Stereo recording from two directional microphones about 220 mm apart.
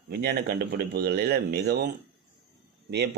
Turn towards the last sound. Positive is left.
turn(degrees=-50)  # may be behind; listen again after turning